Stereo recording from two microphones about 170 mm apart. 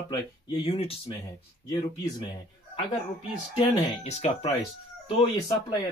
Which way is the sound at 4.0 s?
40° left (ahead or behind).